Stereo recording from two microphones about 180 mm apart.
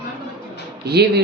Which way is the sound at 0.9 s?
65° right (ahead or behind).